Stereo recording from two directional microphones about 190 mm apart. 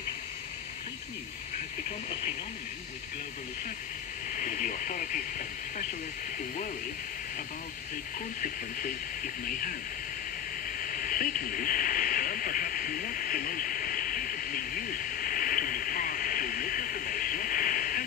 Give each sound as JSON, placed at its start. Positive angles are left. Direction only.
{"t": 4.3, "sound": "speech", "side_deg": 45}
{"t": 8.4, "sound": "speech", "side_deg": 45}
{"t": 10.8, "sound": "hiss", "side_deg": 45}